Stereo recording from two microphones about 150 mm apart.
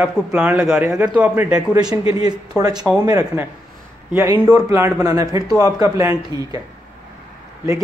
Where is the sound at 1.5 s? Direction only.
25° right (ahead or behind).